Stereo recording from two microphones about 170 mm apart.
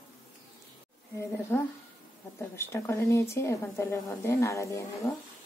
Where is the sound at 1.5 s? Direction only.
15° left (ahead or behind).